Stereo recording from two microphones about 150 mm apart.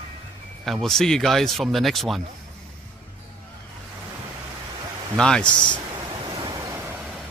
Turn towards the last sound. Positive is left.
turn(degrees=-15)  # may be behind; listen again after turning